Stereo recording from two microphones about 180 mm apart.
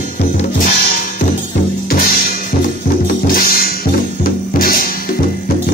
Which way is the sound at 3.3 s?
55° left (ahead or behind).